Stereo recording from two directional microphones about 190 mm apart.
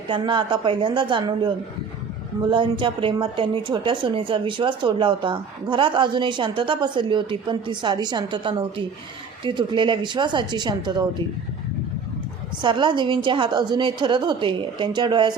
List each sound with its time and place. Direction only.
0.1 s a woman's voice: 25° right (ahead or behind)
2.5 s a woman's voice: 25° right (ahead or behind)
12.6 s a woman's voice: 25° right (ahead or behind)